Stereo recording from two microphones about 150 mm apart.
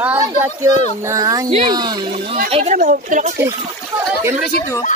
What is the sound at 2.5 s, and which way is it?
Speech, 50° right (ahead or behind).